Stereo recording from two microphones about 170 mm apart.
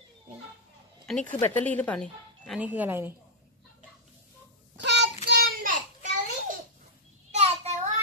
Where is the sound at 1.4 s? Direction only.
10° left (ahead or behind).